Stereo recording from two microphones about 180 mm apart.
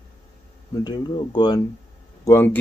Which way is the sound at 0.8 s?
25° left (ahead or behind).